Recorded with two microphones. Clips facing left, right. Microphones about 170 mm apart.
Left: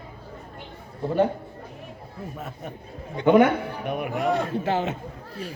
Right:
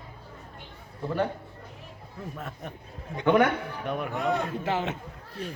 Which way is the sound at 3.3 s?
25° left (ahead or behind).